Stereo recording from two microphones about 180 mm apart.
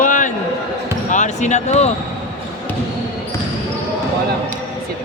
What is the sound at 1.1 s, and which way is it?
Basketball bounce, 40° left (ahead or behind).